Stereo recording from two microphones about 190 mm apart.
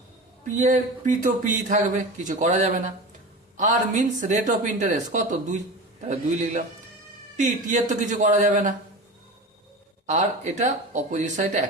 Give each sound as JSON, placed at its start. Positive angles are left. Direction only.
{"t": 0.4, "sound": "speech", "side_deg": -40}
{"t": 10.1, "sound": "speech", "side_deg": -40}